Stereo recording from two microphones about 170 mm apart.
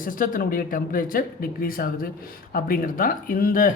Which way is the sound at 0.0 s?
55° left (ahead or behind).